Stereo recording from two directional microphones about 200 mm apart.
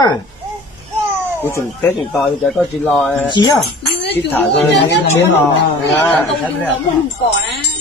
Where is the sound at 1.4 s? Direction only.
10° left (ahead or behind).